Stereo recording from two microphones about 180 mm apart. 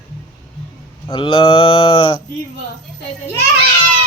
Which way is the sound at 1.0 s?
30° left (ahead or behind).